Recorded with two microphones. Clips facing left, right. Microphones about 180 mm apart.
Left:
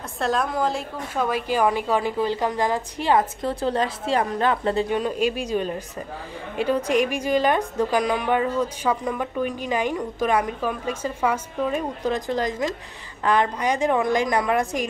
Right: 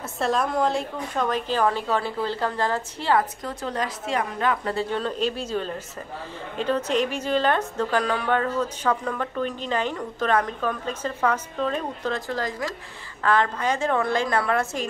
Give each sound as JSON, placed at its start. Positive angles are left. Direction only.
{"t": 0.2, "sound": "a woman's voice", "side_deg": 0}
{"t": 3.4, "sound": "a woman's voice", "side_deg": 30}
{"t": 4.8, "sound": "a woman's voice", "side_deg": 10}